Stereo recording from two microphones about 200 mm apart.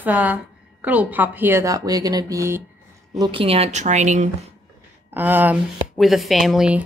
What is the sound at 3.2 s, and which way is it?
Speech, 25° right (ahead or behind).